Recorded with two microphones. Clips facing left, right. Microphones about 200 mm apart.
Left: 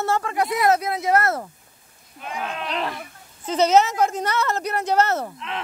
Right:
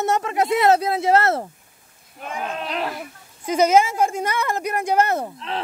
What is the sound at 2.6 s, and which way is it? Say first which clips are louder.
A woman's voice: right 1 dB; 5° right (ahead or behind).